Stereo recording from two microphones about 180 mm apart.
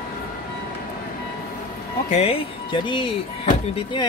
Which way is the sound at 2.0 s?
35° left (ahead or behind).